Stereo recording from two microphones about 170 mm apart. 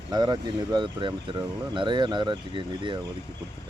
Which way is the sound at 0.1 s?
25° right (ahead or behind).